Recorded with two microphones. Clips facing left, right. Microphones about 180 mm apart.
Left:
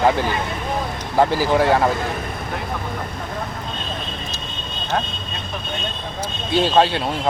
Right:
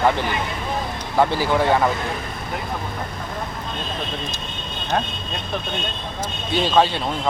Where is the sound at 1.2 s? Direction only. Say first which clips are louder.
Left 2 dB; 10° left (ahead or behind).